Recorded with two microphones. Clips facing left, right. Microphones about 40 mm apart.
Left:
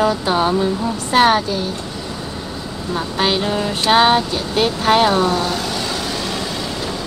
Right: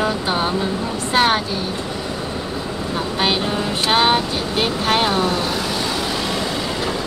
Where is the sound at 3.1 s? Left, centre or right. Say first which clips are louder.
Left 2 dB; centre.